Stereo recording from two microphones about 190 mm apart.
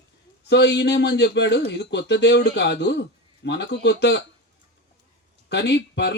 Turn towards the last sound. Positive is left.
turn(degrees=65)  # may be behind; listen again after turning